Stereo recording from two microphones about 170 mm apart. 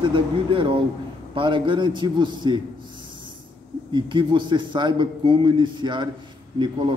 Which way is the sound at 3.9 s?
30° right (ahead or behind).